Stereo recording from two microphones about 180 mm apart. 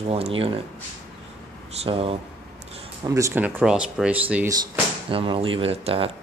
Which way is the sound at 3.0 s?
15° right (ahead or behind).